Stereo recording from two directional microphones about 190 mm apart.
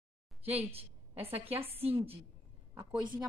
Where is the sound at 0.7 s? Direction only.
30° right (ahead or behind).